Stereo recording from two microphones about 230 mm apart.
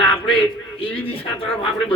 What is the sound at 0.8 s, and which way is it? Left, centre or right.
Speech, left.